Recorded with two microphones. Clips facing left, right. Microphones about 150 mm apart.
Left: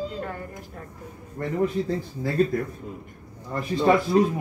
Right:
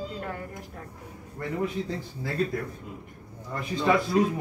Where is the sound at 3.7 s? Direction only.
30° left (ahead or behind).